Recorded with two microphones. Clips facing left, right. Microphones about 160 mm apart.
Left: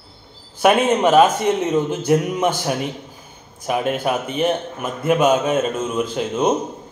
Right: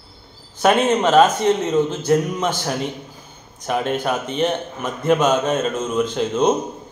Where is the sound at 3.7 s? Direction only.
10° left (ahead or behind).